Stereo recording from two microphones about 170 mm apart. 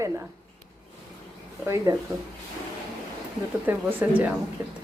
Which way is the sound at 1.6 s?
15° right (ahead or behind).